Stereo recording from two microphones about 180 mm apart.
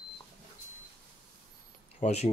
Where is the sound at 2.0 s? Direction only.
35° left (ahead or behind).